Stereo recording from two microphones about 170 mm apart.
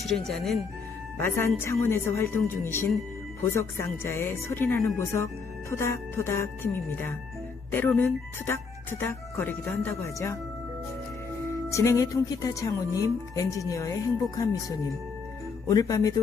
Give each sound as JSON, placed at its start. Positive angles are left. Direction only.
{"t": 0.0, "sound": "speech", "side_deg": 0}
{"t": 1.1, "sound": "speech", "side_deg": 15}
{"t": 11.7, "sound": "speech", "side_deg": 15}
{"t": 15.7, "sound": "speech", "side_deg": 20}